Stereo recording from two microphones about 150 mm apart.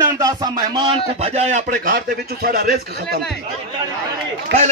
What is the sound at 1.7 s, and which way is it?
A man's voice, 80° right.